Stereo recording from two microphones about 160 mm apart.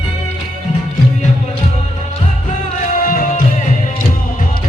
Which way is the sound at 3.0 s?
60° left (ahead or behind).